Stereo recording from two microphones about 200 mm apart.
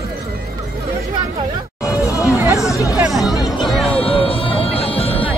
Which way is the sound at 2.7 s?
15° left (ahead or behind).